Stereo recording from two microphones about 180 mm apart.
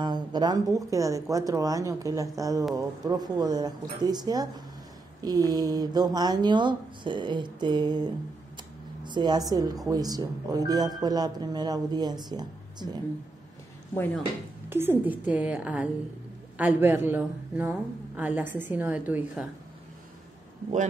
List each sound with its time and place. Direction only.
0.0 s speech: 25° right (ahead or behind)
14.7 s a woman's voice: 10° right (ahead or behind)